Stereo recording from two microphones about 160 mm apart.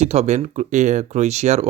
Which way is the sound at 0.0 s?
45° right (ahead or behind).